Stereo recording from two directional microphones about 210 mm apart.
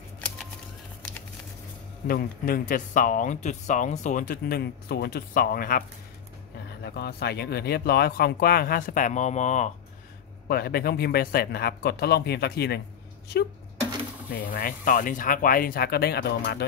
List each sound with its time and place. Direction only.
2.0 s speech: 45° left (ahead or behind)
10.5 s speech: 45° left (ahead or behind)
14.3 s speech: 45° left (ahead or behind)